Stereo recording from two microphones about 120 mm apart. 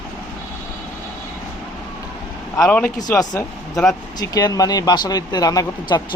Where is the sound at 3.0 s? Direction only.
30° left (ahead or behind).